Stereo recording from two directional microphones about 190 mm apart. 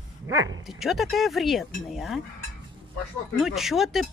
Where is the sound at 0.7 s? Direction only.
Centre (ahead or behind).